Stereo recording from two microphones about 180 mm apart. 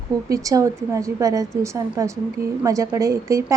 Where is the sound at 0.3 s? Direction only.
20° right (ahead or behind).